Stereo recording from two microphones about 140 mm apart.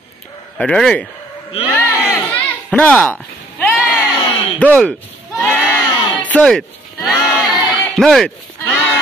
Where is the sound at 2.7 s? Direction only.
10° left (ahead or behind).